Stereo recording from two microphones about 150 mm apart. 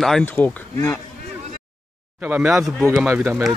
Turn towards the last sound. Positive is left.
turn(degrees=-15)  # may be behind; listen again after turning